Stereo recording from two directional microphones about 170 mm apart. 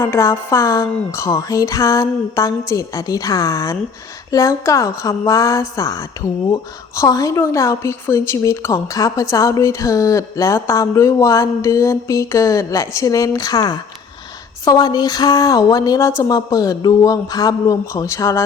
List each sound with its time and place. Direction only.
0.0 s speech: 15° left (ahead or behind)